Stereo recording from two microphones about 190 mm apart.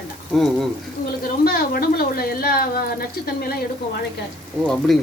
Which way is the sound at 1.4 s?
50° left (ahead or behind).